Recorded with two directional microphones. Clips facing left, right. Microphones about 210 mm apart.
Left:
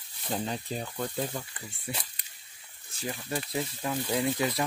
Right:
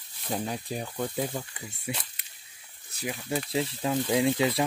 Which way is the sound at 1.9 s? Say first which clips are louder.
Right 3 dB; centre (ahead or behind).